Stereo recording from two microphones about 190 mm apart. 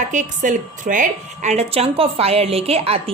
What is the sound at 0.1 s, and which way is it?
A woman's voice, 40° right (ahead or behind).